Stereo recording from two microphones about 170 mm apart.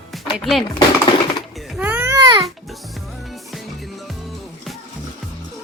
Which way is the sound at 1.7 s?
10° right (ahead or behind).